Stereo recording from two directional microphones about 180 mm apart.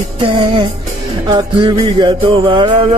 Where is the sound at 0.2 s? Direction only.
30° right (ahead or behind).